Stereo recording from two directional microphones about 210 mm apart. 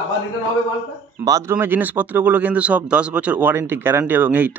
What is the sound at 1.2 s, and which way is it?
Speech, 15° right (ahead or behind).